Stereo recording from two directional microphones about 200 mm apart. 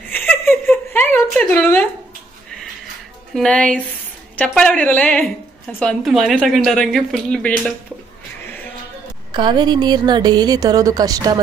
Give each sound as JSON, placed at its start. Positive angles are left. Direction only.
{"t": 0.1, "sound": "a sound", "side_deg": 10}
{"t": 3.3, "sound": "a woman's voice", "side_deg": 5}
{"t": 9.3, "sound": "a woman's voice", "side_deg": -25}